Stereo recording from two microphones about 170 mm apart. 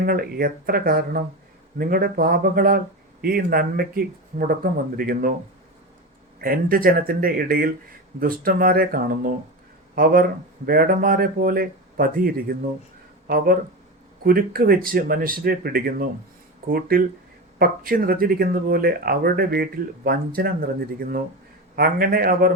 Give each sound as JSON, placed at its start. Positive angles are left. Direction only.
{"t": 0.0, "sound": "speech", "side_deg": -60}
{"t": 6.4, "sound": "speech", "side_deg": -60}
{"t": 17.6, "sound": "speech", "side_deg": -60}